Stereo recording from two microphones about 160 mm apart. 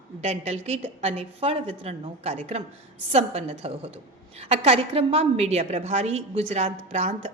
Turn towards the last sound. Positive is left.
turn(degrees=-45)  # may be behind; listen again after turning